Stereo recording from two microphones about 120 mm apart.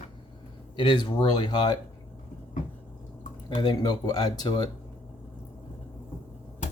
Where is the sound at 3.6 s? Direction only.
35° left (ahead or behind).